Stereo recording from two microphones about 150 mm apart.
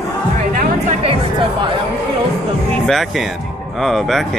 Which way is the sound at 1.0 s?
35° right (ahead or behind).